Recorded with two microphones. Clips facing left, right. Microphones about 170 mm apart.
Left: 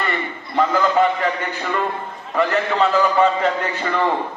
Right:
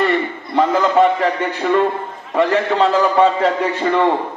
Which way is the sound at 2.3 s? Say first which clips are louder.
Right 4 dB; 30° right (ahead or behind).